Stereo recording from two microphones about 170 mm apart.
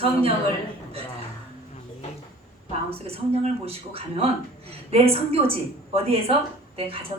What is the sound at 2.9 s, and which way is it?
Speech, 35° right (ahead or behind).